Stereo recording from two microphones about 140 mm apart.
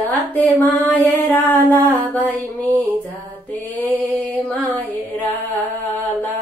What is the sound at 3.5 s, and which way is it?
Mantra, 10° left (ahead or behind).